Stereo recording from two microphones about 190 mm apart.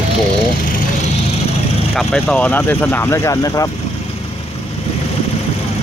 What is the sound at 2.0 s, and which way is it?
Speech, 5° left (ahead or behind).